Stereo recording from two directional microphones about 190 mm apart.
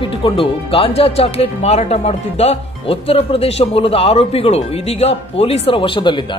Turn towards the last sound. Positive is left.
turn(degrees=25)  # may be behind; listen again after turning